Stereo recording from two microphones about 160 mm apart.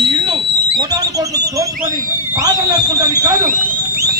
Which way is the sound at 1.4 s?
20° right (ahead or behind).